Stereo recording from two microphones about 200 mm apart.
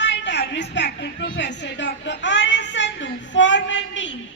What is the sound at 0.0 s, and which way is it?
A woman's voice, 60° left (ahead or behind).